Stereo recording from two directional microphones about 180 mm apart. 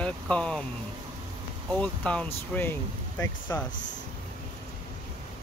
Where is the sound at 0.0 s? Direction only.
5° left (ahead or behind).